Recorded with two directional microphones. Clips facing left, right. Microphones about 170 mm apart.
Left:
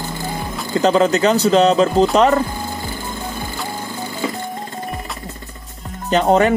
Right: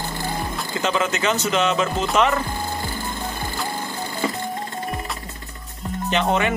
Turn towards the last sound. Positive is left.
turn(degrees=40)  # may be behind; listen again after turning